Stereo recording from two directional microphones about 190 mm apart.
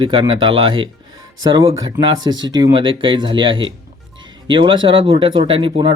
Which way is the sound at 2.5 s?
20° right (ahead or behind).